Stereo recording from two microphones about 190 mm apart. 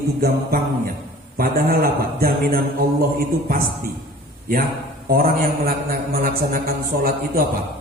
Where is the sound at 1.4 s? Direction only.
50° right (ahead or behind).